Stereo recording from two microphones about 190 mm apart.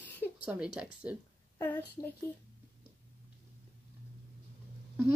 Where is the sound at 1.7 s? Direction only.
20° left (ahead or behind).